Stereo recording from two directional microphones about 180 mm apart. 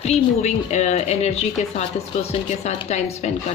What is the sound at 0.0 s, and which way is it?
Speech, 40° left (ahead or behind).